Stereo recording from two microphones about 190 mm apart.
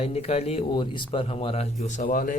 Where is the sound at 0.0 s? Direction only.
30° left (ahead or behind).